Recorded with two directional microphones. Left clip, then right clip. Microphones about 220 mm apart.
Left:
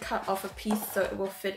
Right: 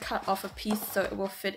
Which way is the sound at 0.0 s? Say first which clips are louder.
Even; 40° right (ahead or behind).